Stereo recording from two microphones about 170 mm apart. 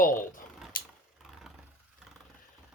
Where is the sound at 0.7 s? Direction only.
60° left (ahead or behind).